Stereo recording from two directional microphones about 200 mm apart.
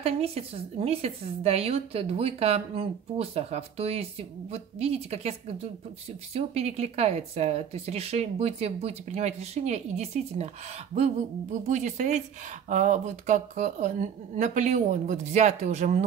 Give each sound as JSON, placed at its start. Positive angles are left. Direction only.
{"t": 0.0, "sound": "a woman's voice", "side_deg": -30}
{"t": 11.6, "sound": "a woman's voice", "side_deg": -35}